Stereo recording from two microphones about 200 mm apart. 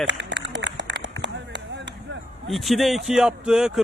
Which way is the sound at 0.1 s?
60° right (ahead or behind).